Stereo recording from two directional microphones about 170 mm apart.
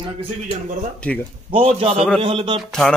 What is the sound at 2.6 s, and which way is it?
Speech, 5° left (ahead or behind).